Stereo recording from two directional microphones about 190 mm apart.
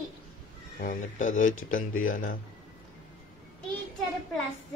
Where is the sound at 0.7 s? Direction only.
40° left (ahead or behind).